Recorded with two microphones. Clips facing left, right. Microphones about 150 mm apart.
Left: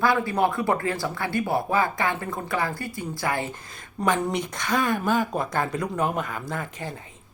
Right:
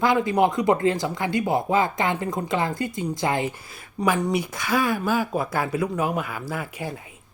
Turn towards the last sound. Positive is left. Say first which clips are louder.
# right 2 dB
turn(degrees=-10)  # may be behind; listen again after turning